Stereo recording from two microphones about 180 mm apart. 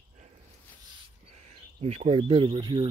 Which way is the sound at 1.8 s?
35° right (ahead or behind).